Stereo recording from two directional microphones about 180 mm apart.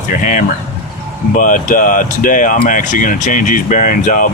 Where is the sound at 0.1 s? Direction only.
45° left (ahead or behind).